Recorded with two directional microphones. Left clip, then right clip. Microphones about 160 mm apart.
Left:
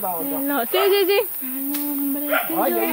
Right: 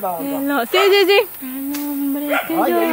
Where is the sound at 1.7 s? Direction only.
15° right (ahead or behind).